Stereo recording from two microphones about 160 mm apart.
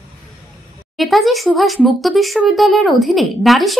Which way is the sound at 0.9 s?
Centre (ahead or behind).